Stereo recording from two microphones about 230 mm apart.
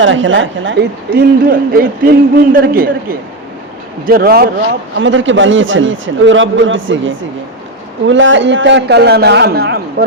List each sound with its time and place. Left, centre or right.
0.0 s a man's voice: right
4.9 s a man's voice: right